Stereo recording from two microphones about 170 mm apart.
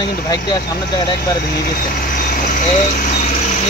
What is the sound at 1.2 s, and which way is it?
Speech, 65° left (ahead or behind).